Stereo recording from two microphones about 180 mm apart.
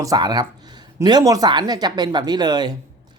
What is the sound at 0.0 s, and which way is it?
A man's voice, 20° right (ahead or behind).